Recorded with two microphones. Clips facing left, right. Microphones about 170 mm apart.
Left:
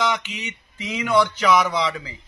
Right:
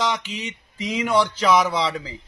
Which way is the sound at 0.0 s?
35° right (ahead or behind).